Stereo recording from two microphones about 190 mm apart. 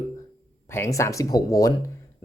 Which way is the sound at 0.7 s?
15° left (ahead or behind).